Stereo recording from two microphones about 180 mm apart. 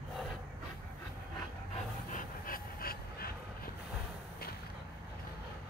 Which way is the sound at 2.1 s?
50° left (ahead or behind).